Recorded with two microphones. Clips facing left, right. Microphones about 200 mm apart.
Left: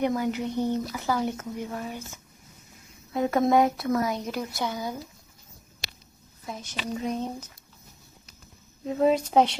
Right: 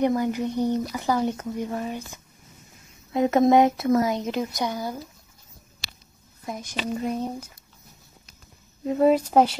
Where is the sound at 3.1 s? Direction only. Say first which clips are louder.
Right 4 dB; 20° right (ahead or behind).